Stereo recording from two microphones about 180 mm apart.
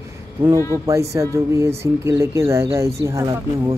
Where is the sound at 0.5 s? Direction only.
15° left (ahead or behind).